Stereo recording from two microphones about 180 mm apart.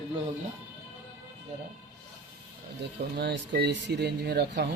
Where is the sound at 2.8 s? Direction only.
65° right (ahead or behind).